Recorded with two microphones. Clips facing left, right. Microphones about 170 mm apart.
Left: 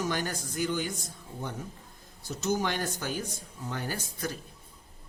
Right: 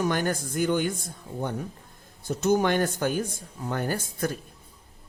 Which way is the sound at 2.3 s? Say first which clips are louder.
Right 7 dB; 55° right (ahead or behind).